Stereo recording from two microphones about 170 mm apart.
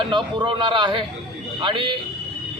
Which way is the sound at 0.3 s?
25° right (ahead or behind).